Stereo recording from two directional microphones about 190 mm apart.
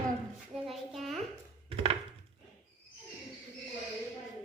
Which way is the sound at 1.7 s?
30° right (ahead or behind).